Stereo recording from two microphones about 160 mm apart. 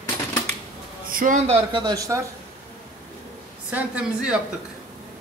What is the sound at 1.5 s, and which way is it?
Speech, 30° right (ahead or behind).